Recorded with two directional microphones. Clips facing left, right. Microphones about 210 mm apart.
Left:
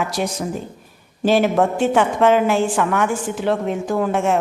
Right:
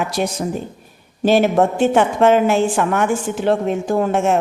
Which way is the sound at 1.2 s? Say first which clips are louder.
Right 2 dB; 25° right (ahead or behind).